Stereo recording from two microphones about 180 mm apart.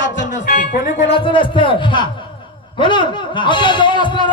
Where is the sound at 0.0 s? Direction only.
90° left.